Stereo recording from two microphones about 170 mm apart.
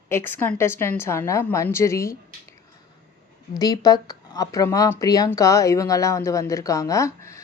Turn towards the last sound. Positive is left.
turn(degrees=20)  # may be behind; listen again after turning